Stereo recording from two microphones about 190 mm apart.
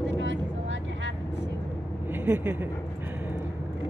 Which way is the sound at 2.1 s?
10° right (ahead or behind).